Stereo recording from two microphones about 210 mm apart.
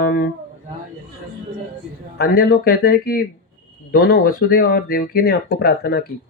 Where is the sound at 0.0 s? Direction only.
45° left (ahead or behind).